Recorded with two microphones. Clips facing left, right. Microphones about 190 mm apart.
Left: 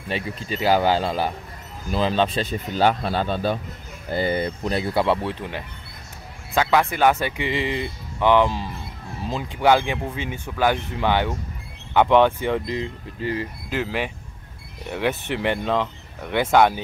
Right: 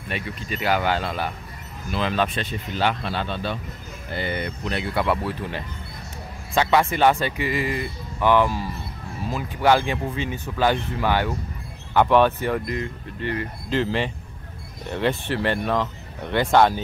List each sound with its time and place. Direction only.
0.1 s speech: 30° left (ahead or behind)
6.5 s speech: centre (ahead or behind)
7.3 s speech: 20° left (ahead or behind)
13.7 s speech: 10° left (ahead or behind)